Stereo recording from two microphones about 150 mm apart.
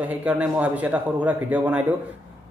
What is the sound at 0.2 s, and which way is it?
Speech, 10° right (ahead or behind).